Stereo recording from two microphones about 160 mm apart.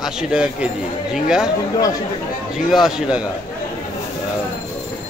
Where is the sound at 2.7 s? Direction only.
Centre (ahead or behind).